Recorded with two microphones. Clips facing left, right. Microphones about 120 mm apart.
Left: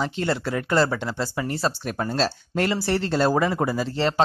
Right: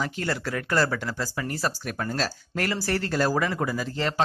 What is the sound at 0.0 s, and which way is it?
Speech, 25° left (ahead or behind).